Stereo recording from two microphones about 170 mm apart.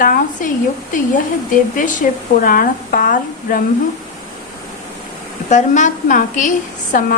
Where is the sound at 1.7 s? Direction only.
50° left (ahead or behind).